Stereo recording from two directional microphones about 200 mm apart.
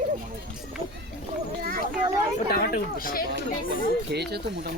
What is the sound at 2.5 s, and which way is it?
Speech, 45° left (ahead or behind).